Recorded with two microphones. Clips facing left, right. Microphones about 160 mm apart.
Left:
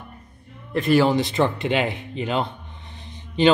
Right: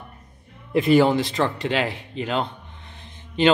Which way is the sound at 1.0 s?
Centre (ahead or behind).